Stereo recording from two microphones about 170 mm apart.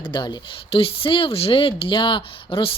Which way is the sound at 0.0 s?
25° left (ahead or behind).